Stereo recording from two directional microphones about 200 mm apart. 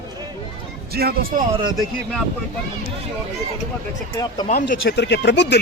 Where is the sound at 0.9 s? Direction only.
50° right (ahead or behind).